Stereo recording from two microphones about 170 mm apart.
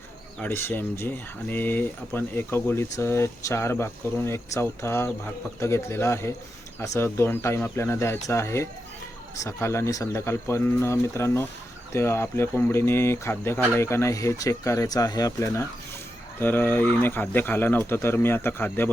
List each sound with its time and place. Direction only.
0.3 s speech: 10° left (ahead or behind)